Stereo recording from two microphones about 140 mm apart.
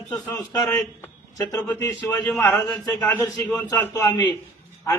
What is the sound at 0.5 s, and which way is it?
A man's voice, 25° left (ahead or behind).